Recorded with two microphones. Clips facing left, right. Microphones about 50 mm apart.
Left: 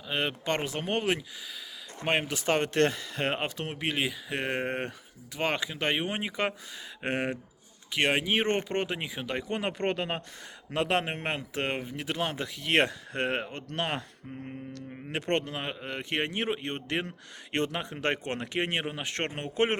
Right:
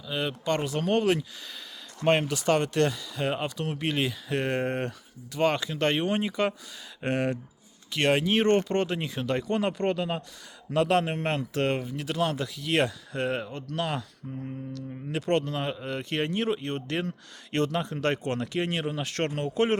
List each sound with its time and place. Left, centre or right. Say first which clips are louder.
0.1 s speech: right 1 dB; left
2.3 s speech: right 2 dB; left
3.8 s speech: right 1 dB; centre